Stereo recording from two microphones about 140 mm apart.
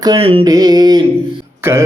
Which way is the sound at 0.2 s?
40° right (ahead or behind).